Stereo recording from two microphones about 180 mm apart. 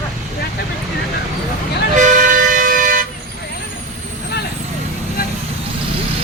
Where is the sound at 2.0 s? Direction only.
45° right (ahead or behind).